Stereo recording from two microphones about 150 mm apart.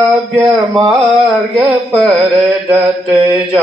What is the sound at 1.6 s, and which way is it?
Speech, centre (ahead or behind).